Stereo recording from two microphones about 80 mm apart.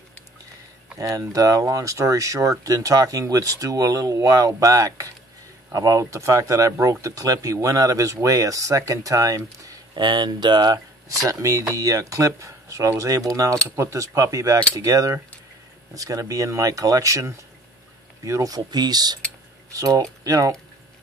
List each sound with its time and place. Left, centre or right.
0.9 s speech: right
9.9 s speech: right
11.2 s speech: right
19.7 s speech: right